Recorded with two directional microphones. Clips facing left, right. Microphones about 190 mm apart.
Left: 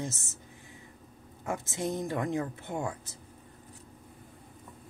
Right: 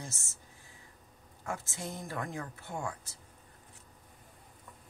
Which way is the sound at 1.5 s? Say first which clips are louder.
Left 7 dB; 20° left (ahead or behind).